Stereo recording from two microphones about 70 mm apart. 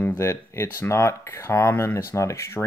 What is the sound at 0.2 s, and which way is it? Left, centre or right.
Speech, left.